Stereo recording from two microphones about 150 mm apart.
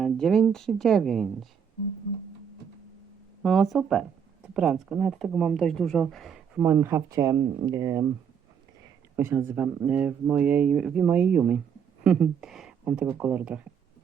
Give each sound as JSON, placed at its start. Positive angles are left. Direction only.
{"t": 0.0, "sound": "speech", "side_deg": 5}
{"t": 3.4, "sound": "speech", "side_deg": 0}
{"t": 6.6, "sound": "speech", "side_deg": -15}
{"t": 9.1, "sound": "speech", "side_deg": -15}